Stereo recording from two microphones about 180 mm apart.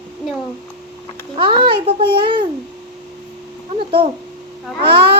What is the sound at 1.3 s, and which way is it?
A child's voice, 25° right (ahead or behind).